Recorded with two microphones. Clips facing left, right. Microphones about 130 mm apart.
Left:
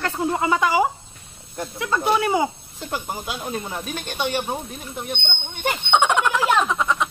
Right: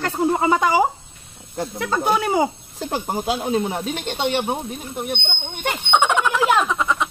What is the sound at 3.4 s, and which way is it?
Speech, 25° right (ahead or behind).